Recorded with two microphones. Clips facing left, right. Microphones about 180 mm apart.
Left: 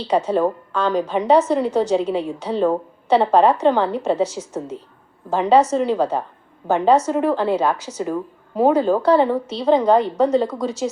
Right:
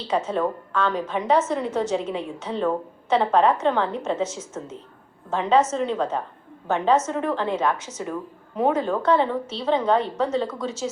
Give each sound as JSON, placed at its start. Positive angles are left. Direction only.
{"t": 0.1, "sound": "a woman's voice", "side_deg": 35}